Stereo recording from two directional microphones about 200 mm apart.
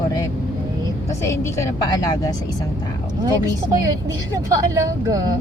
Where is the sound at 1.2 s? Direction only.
15° left (ahead or behind).